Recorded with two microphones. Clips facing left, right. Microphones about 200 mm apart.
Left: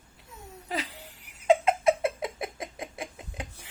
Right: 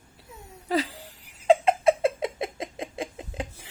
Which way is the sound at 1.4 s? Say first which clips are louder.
Right 2 dB; 30° right (ahead or behind).